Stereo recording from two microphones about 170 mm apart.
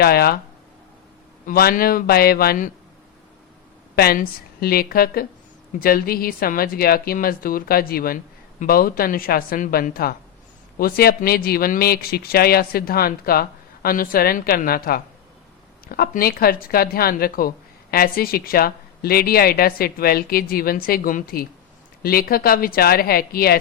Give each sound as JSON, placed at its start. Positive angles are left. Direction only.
{"t": 0.0, "sound": "speech", "side_deg": 65}
{"t": 1.5, "sound": "speech", "side_deg": 55}
{"t": 3.9, "sound": "speech", "side_deg": 65}